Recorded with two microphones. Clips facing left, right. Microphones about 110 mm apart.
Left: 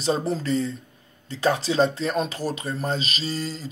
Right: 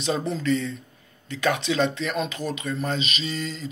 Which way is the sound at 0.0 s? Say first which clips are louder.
Left 1 dB; 35° left (ahead or behind).